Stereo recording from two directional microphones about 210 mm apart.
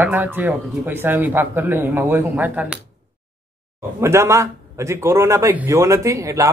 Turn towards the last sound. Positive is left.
turn(degrees=-15)  # may be behind; listen again after turning